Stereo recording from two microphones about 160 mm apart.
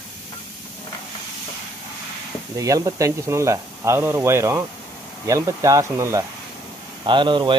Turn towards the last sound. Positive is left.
turn(degrees=-30)  # may be behind; listen again after turning